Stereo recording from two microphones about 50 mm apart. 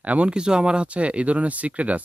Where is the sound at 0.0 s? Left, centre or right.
Right.